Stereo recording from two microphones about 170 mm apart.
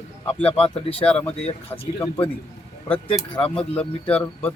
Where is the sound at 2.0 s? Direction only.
30° left (ahead or behind).